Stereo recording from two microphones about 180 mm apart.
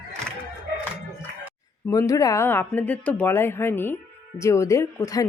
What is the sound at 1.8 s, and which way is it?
Speech, 20° left (ahead or behind).